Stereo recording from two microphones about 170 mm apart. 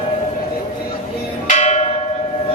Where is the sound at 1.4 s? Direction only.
45° left (ahead or behind).